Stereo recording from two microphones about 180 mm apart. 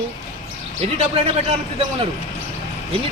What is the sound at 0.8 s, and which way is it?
Speech, 35° right (ahead or behind).